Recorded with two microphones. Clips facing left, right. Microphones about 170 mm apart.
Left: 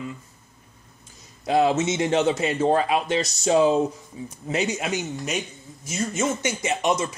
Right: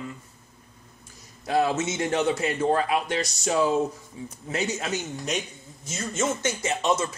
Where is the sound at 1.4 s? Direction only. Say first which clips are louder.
Left 4 dB; 20° left (ahead or behind).